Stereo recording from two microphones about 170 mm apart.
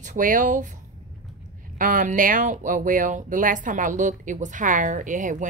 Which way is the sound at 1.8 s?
50° right (ahead or behind).